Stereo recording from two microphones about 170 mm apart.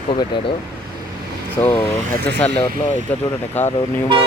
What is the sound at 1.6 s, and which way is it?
Speech, 10° left (ahead or behind).